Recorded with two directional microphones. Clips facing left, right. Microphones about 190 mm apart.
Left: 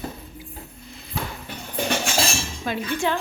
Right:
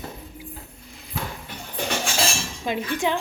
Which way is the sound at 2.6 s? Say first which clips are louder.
Right 1 dB; 15° right (ahead or behind).